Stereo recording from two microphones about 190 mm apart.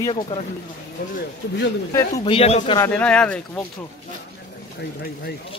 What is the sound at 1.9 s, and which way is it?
Speech, 15° left (ahead or behind).